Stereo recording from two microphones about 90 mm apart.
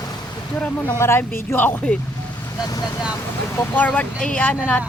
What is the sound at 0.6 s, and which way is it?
Speech, 15° left (ahead or behind).